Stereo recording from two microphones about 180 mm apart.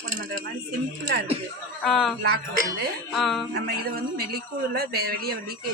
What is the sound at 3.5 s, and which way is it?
A man's voice, 60° right (ahead or behind).